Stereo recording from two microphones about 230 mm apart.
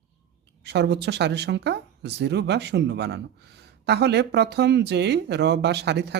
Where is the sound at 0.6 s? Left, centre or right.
Right.